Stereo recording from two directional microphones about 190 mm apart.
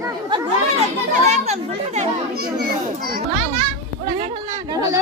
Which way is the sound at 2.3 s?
55° right (ahead or behind).